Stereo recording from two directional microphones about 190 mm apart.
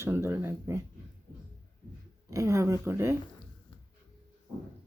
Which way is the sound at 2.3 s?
15° right (ahead or behind).